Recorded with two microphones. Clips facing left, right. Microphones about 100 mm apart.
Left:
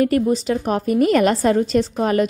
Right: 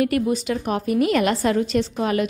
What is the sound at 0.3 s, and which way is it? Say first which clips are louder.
A woman's voice: left 3 dB; 35° left (ahead or behind).